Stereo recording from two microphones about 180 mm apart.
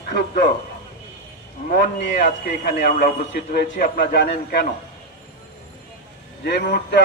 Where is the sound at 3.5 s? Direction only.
55° left (ahead or behind).